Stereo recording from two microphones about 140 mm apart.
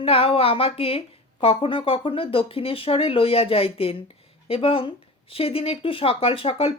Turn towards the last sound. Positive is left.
turn(degrees=40)  # may be behind; listen again after turning